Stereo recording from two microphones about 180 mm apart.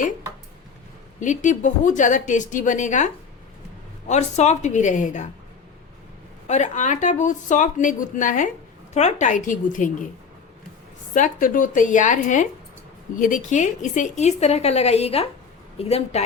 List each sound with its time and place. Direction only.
1.2 s speech: 45° left (ahead or behind)
4.1 s a woman's voice: 40° left (ahead or behind)
6.5 s speech: 40° left (ahead or behind)
11.1 s a woman's voice: 45° left (ahead or behind)